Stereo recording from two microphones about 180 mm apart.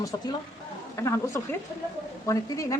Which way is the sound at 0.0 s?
20° left (ahead or behind).